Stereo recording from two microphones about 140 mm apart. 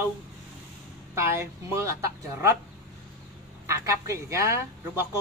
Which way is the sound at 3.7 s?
20° right (ahead or behind).